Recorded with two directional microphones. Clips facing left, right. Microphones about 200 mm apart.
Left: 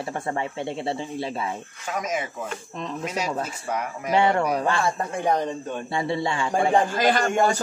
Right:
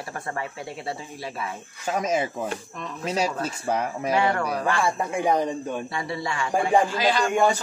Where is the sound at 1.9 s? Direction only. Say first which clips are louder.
Right 4 dB; 30° right (ahead or behind).